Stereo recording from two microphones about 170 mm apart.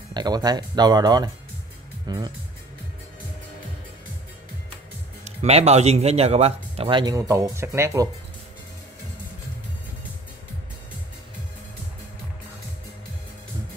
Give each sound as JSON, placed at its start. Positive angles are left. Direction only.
{"t": 0.1, "sound": "speech", "side_deg": -25}
{"t": 5.2, "sound": "speech", "side_deg": -40}